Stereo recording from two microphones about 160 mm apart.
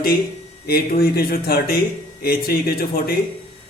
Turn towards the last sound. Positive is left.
turn(degrees=75)  # may be behind; listen again after turning